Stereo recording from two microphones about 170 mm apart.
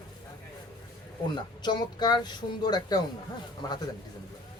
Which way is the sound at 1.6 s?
25° left (ahead or behind).